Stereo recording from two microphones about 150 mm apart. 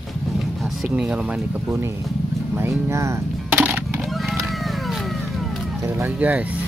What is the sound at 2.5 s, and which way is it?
Music, 15° right (ahead or behind).